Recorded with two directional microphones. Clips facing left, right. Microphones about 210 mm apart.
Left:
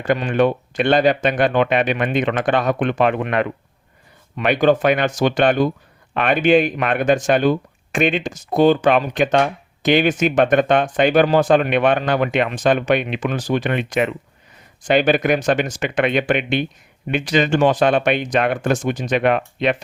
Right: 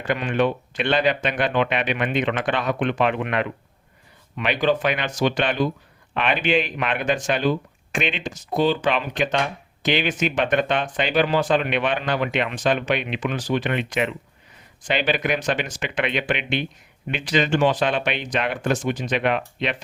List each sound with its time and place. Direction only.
0.1 s speech: 40° left (ahead or behind)